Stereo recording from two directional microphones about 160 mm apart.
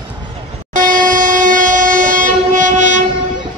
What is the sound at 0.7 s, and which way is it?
Train, 60° right (ahead or behind).